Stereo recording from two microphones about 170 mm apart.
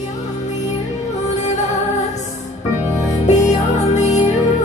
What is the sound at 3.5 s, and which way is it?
Music, 45° left (ahead or behind).